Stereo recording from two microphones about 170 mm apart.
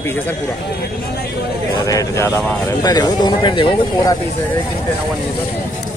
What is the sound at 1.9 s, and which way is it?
Speech, 20° left (ahead or behind).